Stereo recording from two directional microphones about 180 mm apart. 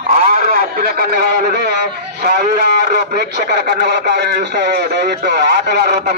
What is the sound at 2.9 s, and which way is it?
A man's voice, 60° right (ahead or behind).